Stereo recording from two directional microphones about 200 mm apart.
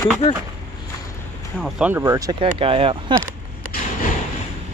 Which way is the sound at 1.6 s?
5° right (ahead or behind).